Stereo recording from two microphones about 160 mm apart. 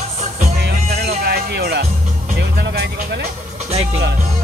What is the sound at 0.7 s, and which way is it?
Music, 80° right.